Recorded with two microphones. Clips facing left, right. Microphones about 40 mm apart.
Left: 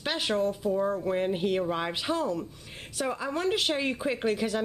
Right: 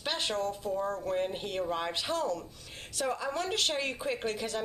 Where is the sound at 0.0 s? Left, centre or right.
Centre.